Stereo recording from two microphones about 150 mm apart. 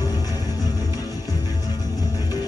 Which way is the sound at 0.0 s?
25° left (ahead or behind).